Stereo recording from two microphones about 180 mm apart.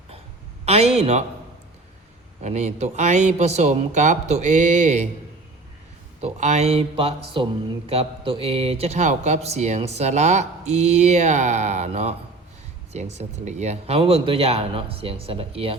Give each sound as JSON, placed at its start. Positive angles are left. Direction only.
{"t": 0.6, "sound": "a sound", "side_deg": -35}
{"t": 2.4, "sound": "speech", "side_deg": -40}
{"t": 6.1, "sound": "speech", "side_deg": -40}